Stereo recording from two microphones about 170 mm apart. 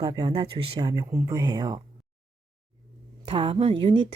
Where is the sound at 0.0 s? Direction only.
25° right (ahead or behind).